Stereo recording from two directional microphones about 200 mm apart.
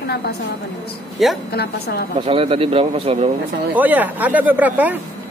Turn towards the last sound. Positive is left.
turn(degrees=-10)  # may be behind; listen again after turning